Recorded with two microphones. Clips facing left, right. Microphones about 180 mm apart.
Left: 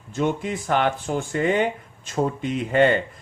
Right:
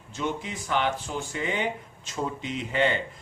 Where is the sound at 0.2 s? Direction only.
50° left (ahead or behind).